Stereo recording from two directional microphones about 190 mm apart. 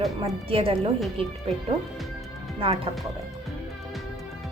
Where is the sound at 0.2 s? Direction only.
30° right (ahead or behind).